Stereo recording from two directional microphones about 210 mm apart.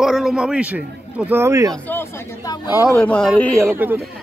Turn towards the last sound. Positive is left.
turn(degrees=-10)  # may be behind; listen again after turning